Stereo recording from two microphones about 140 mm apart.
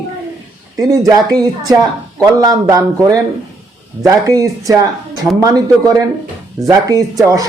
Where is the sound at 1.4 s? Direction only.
25° right (ahead or behind).